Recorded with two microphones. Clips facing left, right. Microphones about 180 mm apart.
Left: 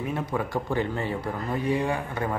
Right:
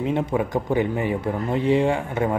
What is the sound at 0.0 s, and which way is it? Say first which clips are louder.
Speech: right 6 dB; 25° right (ahead or behind).